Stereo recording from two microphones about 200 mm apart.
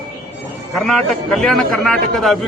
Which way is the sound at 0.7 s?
Centre (ahead or behind).